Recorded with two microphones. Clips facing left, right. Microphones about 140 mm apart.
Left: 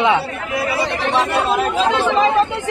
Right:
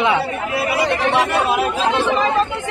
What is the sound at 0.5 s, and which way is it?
Speech, 25° right (ahead or behind).